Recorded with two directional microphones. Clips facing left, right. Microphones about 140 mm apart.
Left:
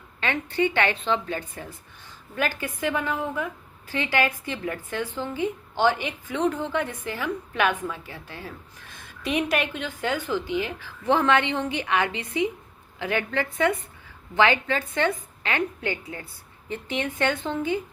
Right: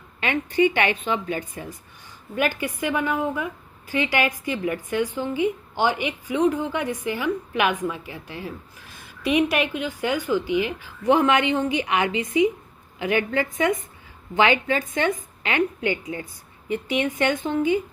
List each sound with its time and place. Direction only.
0.2 s a woman's voice: 15° right (ahead or behind)